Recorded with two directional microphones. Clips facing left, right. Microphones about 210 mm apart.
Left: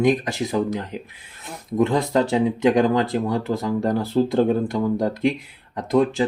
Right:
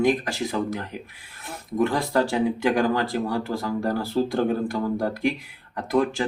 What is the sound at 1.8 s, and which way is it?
Speech, 20° left (ahead or behind).